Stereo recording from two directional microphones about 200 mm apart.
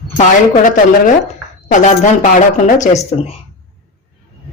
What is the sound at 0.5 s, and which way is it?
Speech, 40° left (ahead or behind).